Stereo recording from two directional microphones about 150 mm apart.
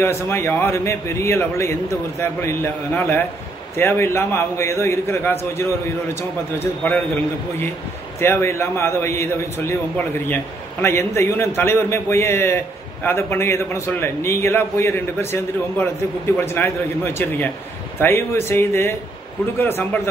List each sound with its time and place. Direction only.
0.3 s a man's voice: 15° left (ahead or behind)
8.2 s a man's voice: 15° left (ahead or behind)